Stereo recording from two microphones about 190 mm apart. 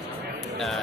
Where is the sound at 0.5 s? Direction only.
Centre (ahead or behind).